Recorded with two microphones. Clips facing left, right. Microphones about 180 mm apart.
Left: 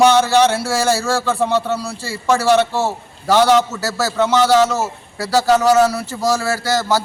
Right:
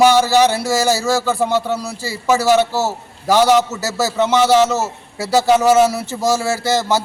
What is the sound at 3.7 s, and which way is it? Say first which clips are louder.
Speech: right 1 dB; 20° right (ahead or behind).